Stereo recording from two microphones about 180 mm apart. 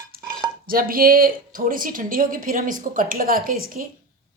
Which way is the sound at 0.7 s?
55° right (ahead or behind).